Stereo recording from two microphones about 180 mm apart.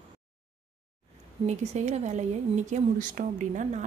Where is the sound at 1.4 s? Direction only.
40° right (ahead or behind).